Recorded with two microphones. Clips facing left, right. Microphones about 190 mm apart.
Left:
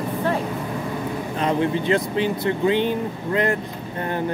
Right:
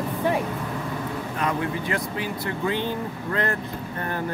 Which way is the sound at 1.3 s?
25° left (ahead or behind).